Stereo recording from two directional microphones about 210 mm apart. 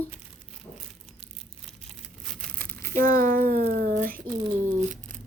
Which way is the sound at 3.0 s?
40° right (ahead or behind).